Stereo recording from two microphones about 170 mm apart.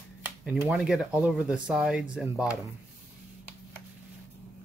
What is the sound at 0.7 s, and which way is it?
Speech, centre (ahead or behind).